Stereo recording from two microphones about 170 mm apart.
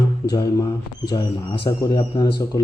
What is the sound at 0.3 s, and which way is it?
Speech, 25° left (ahead or behind).